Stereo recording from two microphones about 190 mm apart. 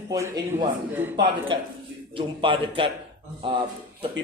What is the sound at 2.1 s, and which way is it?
Speech, 25° right (ahead or behind).